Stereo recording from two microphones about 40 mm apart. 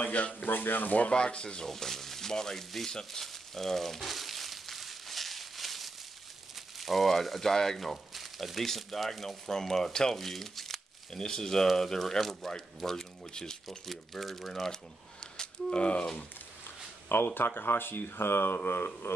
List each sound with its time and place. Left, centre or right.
0.0 s speech: left
0.5 s speech: left
1.1 s speech: left
1.7 s speech: centre
2.9 s crumpling: centre
6.8 s speech: centre
9.5 s speech: centre
11.1 s speech: centre
15.3 s speech: left
17.1 s speech: left
19.0 s a sound: left